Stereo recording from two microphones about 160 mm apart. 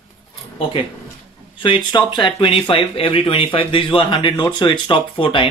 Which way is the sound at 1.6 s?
30° left (ahead or behind).